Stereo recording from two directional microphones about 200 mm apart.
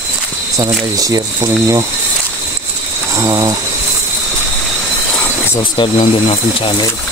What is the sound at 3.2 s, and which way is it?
Speech, 15° right (ahead or behind).